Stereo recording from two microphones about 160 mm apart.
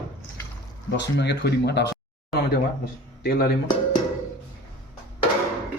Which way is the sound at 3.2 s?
75° left (ahead or behind).